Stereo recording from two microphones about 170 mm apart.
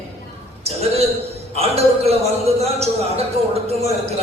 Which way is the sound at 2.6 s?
35° right (ahead or behind).